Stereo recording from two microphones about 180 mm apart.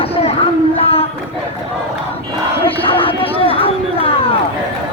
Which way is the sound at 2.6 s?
30° left (ahead or behind).